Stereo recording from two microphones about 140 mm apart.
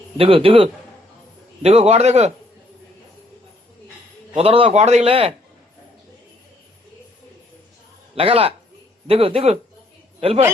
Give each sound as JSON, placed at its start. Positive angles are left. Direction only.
{"t": 0.2, "sound": "a man's voice", "side_deg": -40}
{"t": 4.4, "sound": "a man's voice", "side_deg": -40}
{"t": 8.1, "sound": "a man's voice", "side_deg": -45}